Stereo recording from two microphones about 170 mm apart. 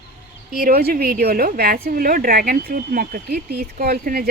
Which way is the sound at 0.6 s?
65° right (ahead or behind).